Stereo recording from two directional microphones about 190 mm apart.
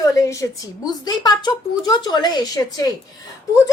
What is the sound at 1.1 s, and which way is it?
Speech, 20° left (ahead or behind).